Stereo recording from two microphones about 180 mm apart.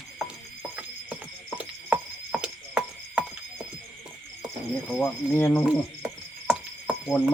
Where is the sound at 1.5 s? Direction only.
5° right (ahead or behind).